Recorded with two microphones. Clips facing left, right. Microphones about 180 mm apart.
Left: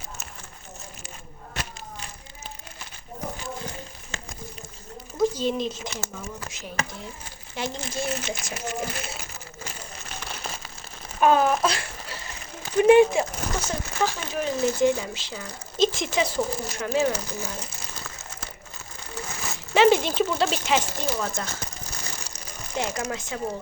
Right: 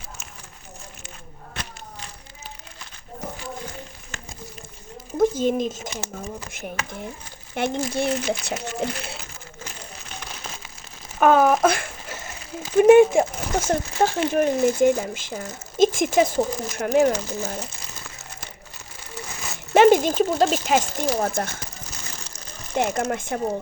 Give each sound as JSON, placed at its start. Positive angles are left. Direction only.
{"t": 5.1, "sound": "a child's voice", "side_deg": -50}
{"t": 11.2, "sound": "a sound", "side_deg": -60}
{"t": 12.7, "sound": "speech", "side_deg": -50}
{"t": 19.7, "sound": "speech", "side_deg": -50}
{"t": 22.8, "sound": "speech", "side_deg": -55}